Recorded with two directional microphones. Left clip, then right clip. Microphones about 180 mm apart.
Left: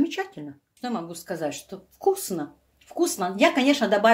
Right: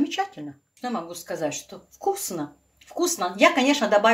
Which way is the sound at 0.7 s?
25° left (ahead or behind).